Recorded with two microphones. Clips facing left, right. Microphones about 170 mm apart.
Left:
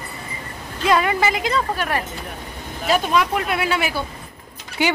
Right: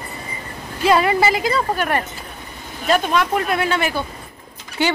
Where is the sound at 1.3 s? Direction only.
5° right (ahead or behind).